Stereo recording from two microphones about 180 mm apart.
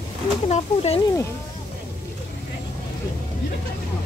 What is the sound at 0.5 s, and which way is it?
Speech, 35° left (ahead or behind).